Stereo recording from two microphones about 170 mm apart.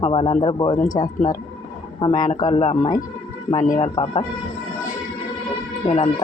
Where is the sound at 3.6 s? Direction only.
45° left (ahead or behind).